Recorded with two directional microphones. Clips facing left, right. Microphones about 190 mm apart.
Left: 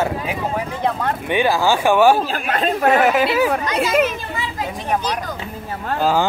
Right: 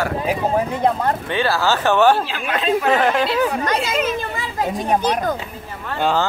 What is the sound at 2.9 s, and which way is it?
Speech, 5° left (ahead or behind).